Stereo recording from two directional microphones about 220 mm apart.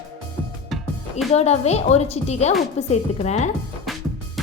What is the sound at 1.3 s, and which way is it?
Speech, 30° left (ahead or behind).